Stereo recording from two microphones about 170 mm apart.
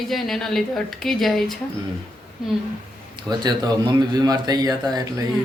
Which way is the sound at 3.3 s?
25° right (ahead or behind).